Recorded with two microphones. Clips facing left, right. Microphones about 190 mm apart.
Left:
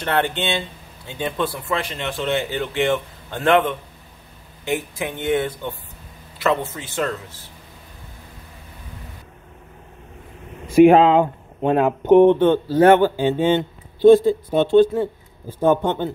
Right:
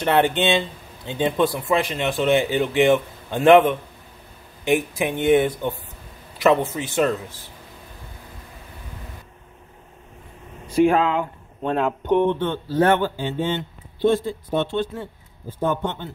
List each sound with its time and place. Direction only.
0.0 s speech: 15° right (ahead or behind)
10.7 s speech: 15° left (ahead or behind)
11.6 s speech: 10° left (ahead or behind)
12.0 s speech: 50° left (ahead or behind)
12.7 s speech: 10° left (ahead or behind)
14.0 s speech: 35° left (ahead or behind)